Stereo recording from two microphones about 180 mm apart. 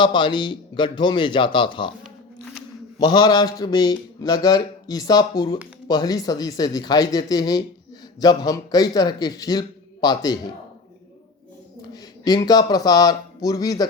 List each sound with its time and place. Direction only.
0.0 s a man's voice: 25° left (ahead or behind)
3.0 s a man's voice: 25° left (ahead or behind)
12.2 s a man's voice: 20° left (ahead or behind)